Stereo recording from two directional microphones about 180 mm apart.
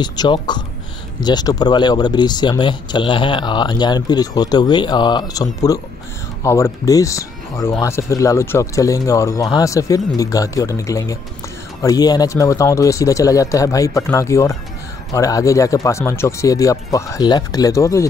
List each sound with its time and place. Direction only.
0.0 s speech: 25° left (ahead or behind)